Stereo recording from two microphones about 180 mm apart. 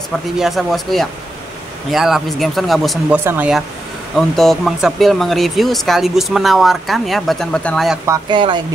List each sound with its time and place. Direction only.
0.4 s speech: centre (ahead or behind)
8.0 s speech: 20° right (ahead or behind)